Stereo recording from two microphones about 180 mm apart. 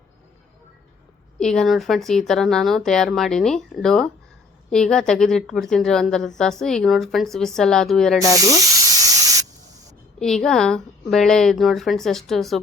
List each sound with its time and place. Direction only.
1.4 s a woman's voice: 5° left (ahead or behind)
9.0 s spray: 20° right (ahead or behind)
10.2 s a woman's voice: 5° left (ahead or behind)